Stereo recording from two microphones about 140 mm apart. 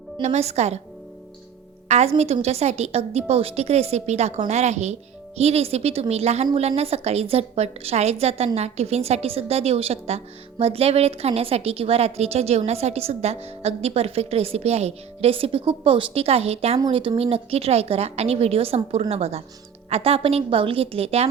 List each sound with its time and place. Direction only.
0.2 s a woman's voice: 50° right (ahead or behind)
1.9 s a woman's voice: 50° right (ahead or behind)